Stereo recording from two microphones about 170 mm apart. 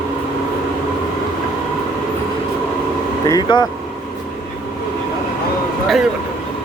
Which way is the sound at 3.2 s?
25° left (ahead or behind).